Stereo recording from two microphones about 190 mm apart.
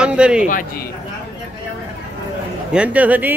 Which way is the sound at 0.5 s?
45° left (ahead or behind).